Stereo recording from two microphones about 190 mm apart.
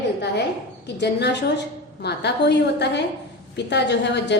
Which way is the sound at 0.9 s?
65° left (ahead or behind).